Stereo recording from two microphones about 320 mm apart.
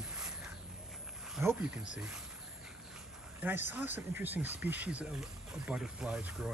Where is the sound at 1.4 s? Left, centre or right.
Centre.